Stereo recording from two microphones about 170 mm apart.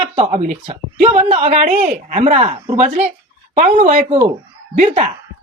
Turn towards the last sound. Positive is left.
turn(degrees=-45)  # may be behind; listen again after turning